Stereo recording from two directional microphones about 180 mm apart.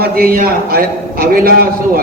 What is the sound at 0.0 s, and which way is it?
A man's voice, 55° right (ahead or behind).